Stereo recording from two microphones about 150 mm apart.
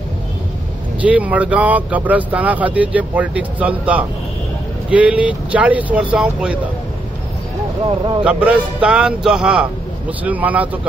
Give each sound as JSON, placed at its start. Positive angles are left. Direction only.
{"t": 1.0, "sound": "speech", "side_deg": -10}
{"t": 8.2, "sound": "speech", "side_deg": -10}